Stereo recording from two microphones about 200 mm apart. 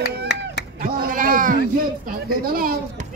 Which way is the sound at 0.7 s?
50° right (ahead or behind).